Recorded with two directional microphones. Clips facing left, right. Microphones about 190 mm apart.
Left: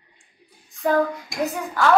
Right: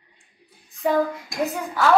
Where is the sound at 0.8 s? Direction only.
Centre (ahead or behind).